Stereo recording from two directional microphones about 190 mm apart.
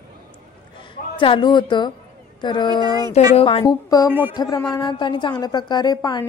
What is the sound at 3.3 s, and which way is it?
Speech, 25° left (ahead or behind).